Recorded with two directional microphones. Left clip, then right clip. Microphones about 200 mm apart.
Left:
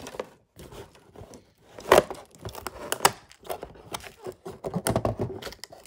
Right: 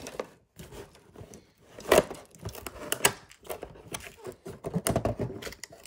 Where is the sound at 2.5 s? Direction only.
30° left (ahead or behind).